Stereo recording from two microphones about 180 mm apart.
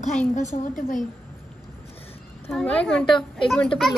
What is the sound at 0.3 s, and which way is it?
Speech, 45° left (ahead or behind).